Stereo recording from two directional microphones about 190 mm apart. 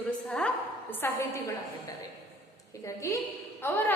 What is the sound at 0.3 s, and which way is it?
A woman's voice, 5° left (ahead or behind).